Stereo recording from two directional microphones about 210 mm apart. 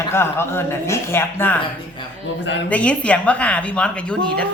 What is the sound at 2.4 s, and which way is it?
Speech, 55° left (ahead or behind).